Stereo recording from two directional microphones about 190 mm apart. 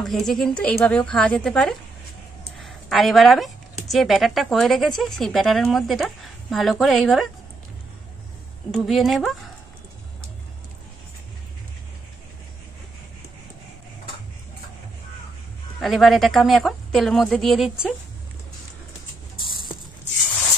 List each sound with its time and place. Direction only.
0.0 s a woman's voice: centre (ahead or behind)
8.7 s a woman's voice: centre (ahead or behind)
15.8 s a woman's voice: centre (ahead or behind)